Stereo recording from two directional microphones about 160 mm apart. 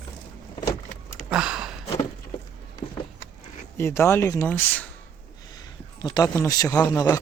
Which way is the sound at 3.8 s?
15° left (ahead or behind).